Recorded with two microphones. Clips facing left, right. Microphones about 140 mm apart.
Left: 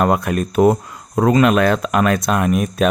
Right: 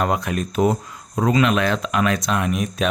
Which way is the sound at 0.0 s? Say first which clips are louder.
Left 5 dB; 50° left (ahead or behind).